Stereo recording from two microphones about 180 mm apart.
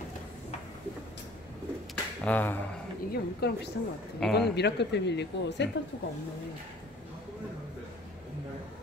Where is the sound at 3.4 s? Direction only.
65° left (ahead or behind).